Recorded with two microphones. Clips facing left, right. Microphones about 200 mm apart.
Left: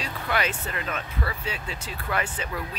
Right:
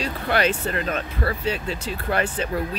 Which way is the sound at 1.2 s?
55° right (ahead or behind).